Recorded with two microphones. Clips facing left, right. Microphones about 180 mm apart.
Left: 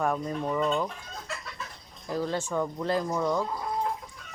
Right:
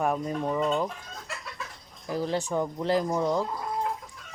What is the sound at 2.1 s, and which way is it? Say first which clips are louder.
Speech: right 1 dB; 15° right (ahead or behind).